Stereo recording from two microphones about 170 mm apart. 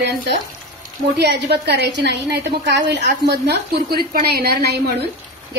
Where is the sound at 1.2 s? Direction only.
75° right (ahead or behind).